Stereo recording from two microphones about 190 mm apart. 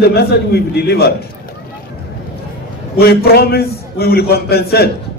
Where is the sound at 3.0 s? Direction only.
55° left (ahead or behind).